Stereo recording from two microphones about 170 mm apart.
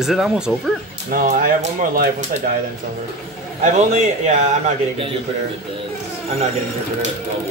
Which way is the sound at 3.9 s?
45° right (ahead or behind).